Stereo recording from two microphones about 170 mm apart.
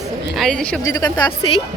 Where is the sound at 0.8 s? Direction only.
25° left (ahead or behind).